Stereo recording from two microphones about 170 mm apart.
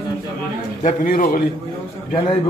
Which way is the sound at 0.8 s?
55° left (ahead or behind).